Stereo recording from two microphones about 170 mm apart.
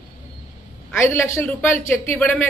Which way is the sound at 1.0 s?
15° left (ahead or behind).